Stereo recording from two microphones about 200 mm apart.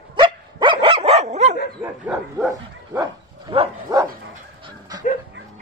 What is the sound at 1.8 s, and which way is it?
Dog, centre (ahead or behind).